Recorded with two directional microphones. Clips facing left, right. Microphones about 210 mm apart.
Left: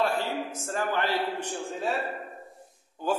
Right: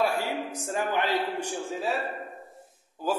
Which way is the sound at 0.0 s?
10° right (ahead or behind).